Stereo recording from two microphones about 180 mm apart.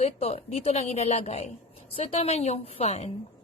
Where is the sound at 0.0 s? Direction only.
35° left (ahead or behind).